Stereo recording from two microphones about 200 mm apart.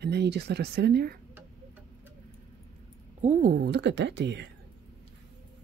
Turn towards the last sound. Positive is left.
turn(degrees=-60)  # may be behind; listen again after turning